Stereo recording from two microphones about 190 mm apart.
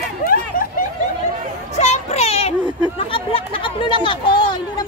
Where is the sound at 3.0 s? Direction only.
30° left (ahead or behind).